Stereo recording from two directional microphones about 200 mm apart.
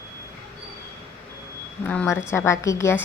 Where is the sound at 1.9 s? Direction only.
5° left (ahead or behind).